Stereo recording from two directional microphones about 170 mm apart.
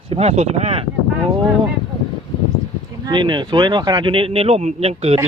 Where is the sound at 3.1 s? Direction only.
25° right (ahead or behind).